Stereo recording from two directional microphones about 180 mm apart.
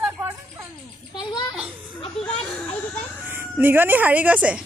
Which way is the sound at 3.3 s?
10° right (ahead or behind).